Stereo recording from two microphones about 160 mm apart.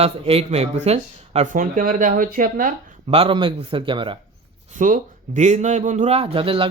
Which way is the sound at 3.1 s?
35° right (ahead or behind).